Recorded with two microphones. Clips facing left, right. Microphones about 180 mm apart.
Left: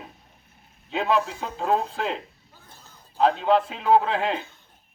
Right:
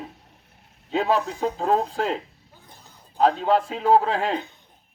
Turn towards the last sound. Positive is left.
turn(degrees=-40)  # may be behind; listen again after turning